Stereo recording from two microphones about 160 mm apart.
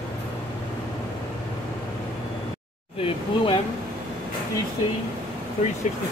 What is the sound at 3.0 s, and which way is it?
Speech, 35° left (ahead or behind).